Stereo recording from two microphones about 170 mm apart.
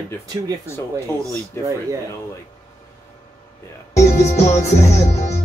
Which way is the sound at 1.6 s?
15° left (ahead or behind).